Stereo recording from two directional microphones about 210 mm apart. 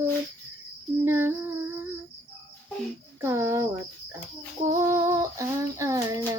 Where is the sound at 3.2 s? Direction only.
10° right (ahead or behind).